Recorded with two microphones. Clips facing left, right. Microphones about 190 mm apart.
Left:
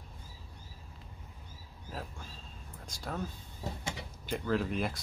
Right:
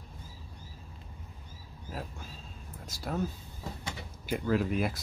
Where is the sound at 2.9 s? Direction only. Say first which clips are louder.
Right 5 dB; 5° right (ahead or behind).